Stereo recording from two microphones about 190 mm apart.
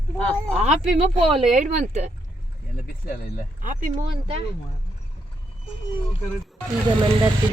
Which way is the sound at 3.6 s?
45° right (ahead or behind).